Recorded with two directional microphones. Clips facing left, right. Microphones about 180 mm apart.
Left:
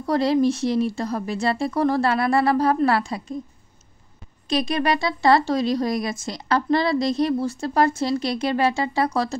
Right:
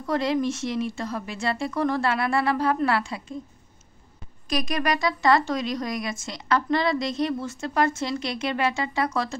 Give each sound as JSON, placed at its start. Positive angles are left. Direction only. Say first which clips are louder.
{"t": 0.0, "sound": "speech", "louder": "left 5 dB", "side_deg": 35}
{"t": 4.5, "sound": "speech", "louder": "left 4 dB", "side_deg": 30}